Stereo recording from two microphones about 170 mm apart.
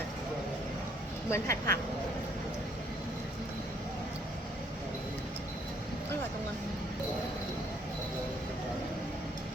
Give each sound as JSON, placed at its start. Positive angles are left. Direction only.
{"t": 1.3, "sound": "speech", "side_deg": 15}